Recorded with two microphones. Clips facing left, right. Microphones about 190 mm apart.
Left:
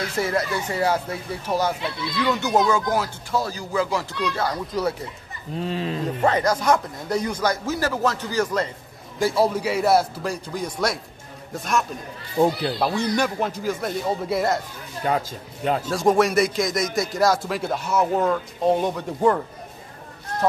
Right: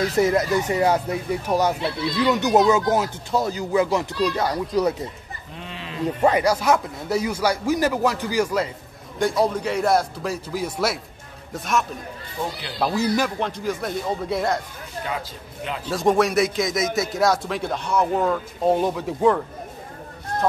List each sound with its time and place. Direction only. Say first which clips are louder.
0.0 s speech: right 5 dB; 20° right (ahead or behind)
5.6 s speech: left 11 dB; 35° left (ahead or behind)
6.2 s speech: right 1 dB; 10° right (ahead or behind)
9.2 s a man's voice: even; 5° left (ahead or behind)
12.4 s speech: left 10 dB; 40° left (ahead or behind)
12.7 s a man's voice: right 1 dB; centre (ahead or behind)
15.0 s a man's voice: left 8 dB; 45° left (ahead or behind)
15.9 s a man's voice: right 1 dB; centre (ahead or behind)